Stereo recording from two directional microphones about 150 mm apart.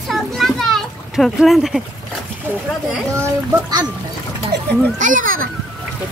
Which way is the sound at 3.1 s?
20° right (ahead or behind).